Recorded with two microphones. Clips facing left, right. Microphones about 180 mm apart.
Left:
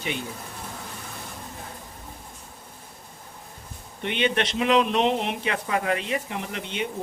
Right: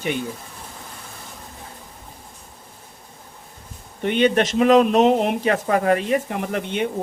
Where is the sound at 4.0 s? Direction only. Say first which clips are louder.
Right 7 dB; 45° right (ahead or behind).